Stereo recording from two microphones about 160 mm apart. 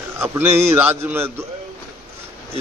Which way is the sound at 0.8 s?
10° right (ahead or behind).